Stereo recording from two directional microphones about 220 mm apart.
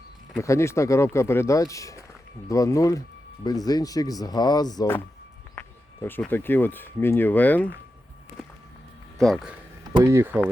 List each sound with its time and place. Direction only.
0.3 s speech: 15° left (ahead or behind)
9.1 s speech: centre (ahead or behind)
10.0 s speech: 10° right (ahead or behind)